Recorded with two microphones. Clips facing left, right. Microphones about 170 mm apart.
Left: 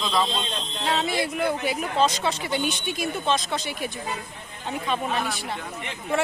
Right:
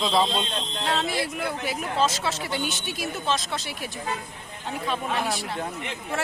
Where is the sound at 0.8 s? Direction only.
Centre (ahead or behind).